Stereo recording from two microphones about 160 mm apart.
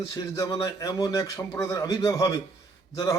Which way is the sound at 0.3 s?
20° left (ahead or behind).